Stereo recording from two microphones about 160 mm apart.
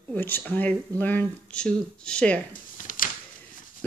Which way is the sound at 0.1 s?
10° left (ahead or behind).